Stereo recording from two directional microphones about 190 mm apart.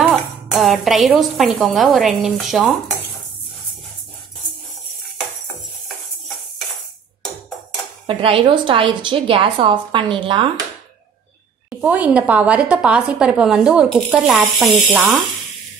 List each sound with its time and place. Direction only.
0.0 s a woman's voice: centre (ahead or behind)
8.1 s a woman's voice: 30° right (ahead or behind)
11.8 s a woman's voice: 5° right (ahead or behind)